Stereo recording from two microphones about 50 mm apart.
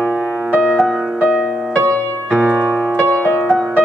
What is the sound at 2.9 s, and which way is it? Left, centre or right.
Music, left.